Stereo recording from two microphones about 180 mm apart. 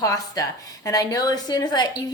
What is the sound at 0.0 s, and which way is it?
Speech, 20° left (ahead or behind).